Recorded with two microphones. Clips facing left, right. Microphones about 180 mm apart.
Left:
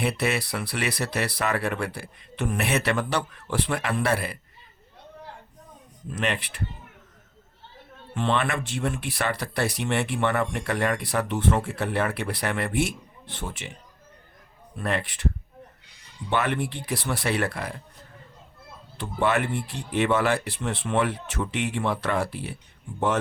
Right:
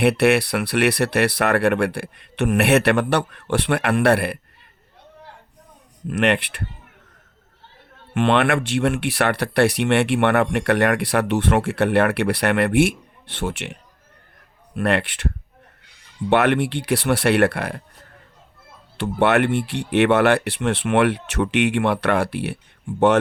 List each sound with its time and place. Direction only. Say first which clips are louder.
0.0 s speech: right 10 dB; 70° right (ahead or behind)
6.1 s speech: right 9 dB; 70° right (ahead or behind)
8.1 s speech: right 8 dB; 70° right (ahead or behind)
16.3 s speech: right 8 dB; 70° right (ahead or behind)
18.9 s speech: right 7 dB; 75° right (ahead or behind)